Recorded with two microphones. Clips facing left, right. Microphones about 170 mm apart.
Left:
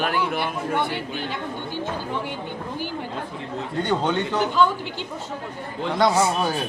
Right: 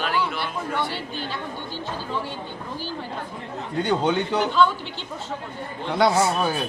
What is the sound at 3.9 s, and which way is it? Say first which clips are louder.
Speech: right 1 dB; 10° right (ahead or behind).